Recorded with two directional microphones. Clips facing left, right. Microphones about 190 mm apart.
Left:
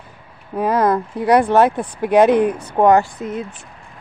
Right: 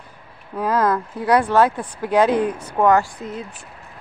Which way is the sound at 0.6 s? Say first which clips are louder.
Left 3 dB; 15° left (ahead or behind).